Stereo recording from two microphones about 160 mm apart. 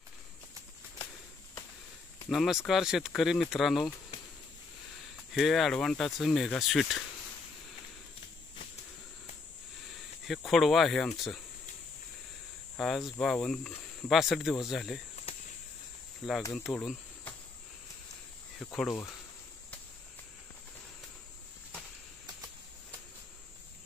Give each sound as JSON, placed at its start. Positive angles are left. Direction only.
{"t": 2.2, "sound": "speech", "side_deg": 0}
{"t": 5.3, "sound": "speech", "side_deg": 0}
{"t": 10.2, "sound": "speech", "side_deg": 0}
{"t": 12.7, "sound": "speech", "side_deg": 0}
{"t": 16.5, "sound": "speech", "side_deg": 0}
{"t": 18.6, "sound": "speech", "side_deg": 5}
{"t": 22.2, "sound": "a sound", "side_deg": -25}